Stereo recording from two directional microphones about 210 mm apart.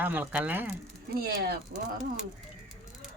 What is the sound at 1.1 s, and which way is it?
Speech, 50° right (ahead or behind).